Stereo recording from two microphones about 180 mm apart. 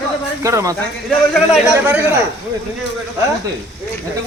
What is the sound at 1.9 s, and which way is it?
Speech, 10° right (ahead or behind).